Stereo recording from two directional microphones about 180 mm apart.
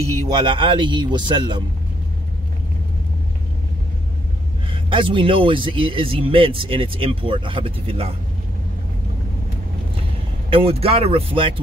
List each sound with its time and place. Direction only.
0.4 s speech: 25° right (ahead or behind)
4.6 s speech: 30° right (ahead or behind)
10.5 s speech: 30° right (ahead or behind)